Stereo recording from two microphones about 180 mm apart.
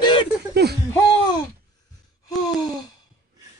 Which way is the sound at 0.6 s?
65° right (ahead or behind).